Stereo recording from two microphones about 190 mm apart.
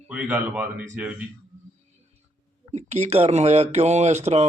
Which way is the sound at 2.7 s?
35° right (ahead or behind).